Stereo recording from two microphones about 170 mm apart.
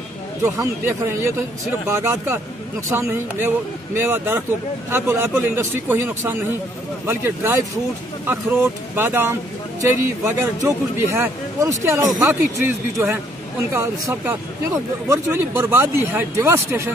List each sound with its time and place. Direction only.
0.4 s speech: 15° right (ahead or behind)